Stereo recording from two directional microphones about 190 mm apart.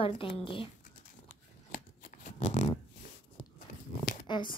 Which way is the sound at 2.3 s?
35° left (ahead or behind).